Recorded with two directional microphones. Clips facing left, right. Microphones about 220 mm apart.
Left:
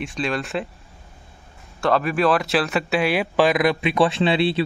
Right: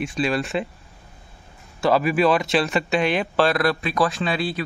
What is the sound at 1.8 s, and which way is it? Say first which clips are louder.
Speech: right 1 dB; 5° right (ahead or behind).